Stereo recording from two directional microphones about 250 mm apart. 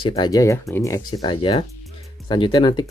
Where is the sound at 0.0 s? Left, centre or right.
Centre.